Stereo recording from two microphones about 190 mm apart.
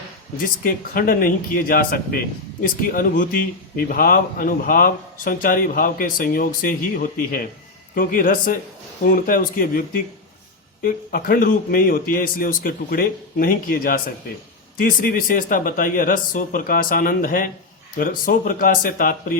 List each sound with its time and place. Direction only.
0.4 s speech: 50° left (ahead or behind)